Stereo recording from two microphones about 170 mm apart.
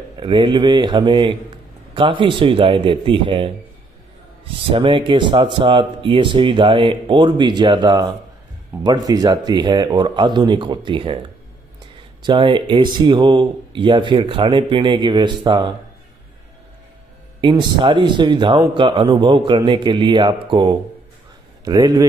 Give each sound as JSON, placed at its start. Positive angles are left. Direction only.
{"t": 0.2, "sound": "a man's voice", "side_deg": -30}
{"t": 4.7, "sound": "speech", "side_deg": -30}
{"t": 12.2, "sound": "speech", "side_deg": -30}
{"t": 17.4, "sound": "speech", "side_deg": -25}